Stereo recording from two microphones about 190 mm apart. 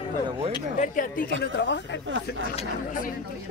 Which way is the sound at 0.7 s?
45° left (ahead or behind).